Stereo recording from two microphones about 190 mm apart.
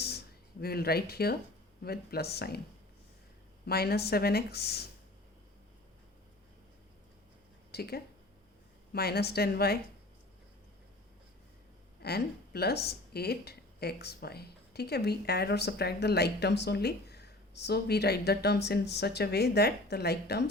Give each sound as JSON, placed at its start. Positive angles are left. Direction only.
{"t": 0.6, "sound": "speech", "side_deg": 55}
{"t": 3.7, "sound": "speech", "side_deg": 55}
{"t": 7.7, "sound": "speech", "side_deg": 55}
{"t": 12.0, "sound": "speech", "side_deg": 55}